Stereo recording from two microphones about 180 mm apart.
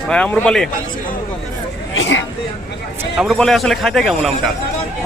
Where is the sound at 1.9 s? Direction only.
90° left.